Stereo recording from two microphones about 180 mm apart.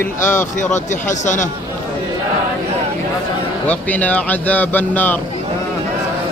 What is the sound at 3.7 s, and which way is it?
Speech, 10° left (ahead or behind).